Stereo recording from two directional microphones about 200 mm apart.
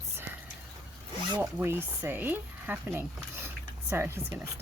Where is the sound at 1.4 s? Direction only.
10° right (ahead or behind).